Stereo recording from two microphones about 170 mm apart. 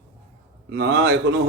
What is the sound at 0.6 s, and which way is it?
Speech, 85° right.